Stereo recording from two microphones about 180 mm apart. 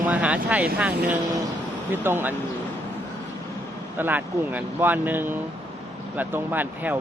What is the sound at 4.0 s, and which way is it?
Speech, 10° right (ahead or behind).